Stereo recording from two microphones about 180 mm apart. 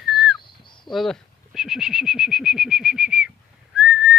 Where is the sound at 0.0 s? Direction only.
Centre (ahead or behind).